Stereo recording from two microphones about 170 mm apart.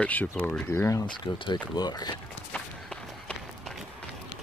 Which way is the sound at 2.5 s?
5° left (ahead or behind).